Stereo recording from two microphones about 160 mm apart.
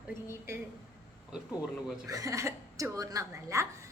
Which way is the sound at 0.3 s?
15° right (ahead or behind).